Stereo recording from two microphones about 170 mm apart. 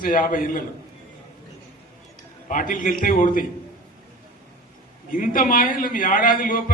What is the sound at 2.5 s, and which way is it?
Speech, 50° left (ahead or behind).